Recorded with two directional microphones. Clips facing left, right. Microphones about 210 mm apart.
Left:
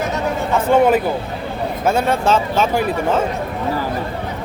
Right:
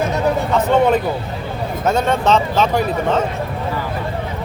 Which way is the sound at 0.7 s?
5° left (ahead or behind).